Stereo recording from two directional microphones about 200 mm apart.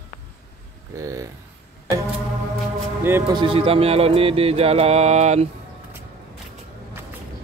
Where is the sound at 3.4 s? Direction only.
25° right (ahead or behind).